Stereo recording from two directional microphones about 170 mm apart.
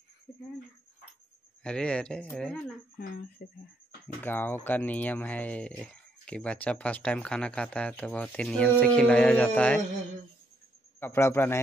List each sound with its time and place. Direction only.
1.6 s speech: 5° left (ahead or behind)
3.0 s speech: 60° left (ahead or behind)
4.2 s speech: 10° left (ahead or behind)
11.0 s speech: 15° left (ahead or behind)